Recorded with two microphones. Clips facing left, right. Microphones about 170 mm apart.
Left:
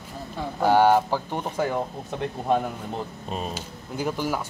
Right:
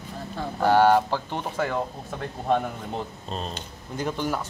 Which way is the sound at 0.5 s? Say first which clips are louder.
Even; 15° left (ahead or behind).